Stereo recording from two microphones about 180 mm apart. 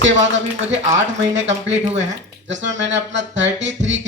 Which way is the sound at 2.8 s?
90° right.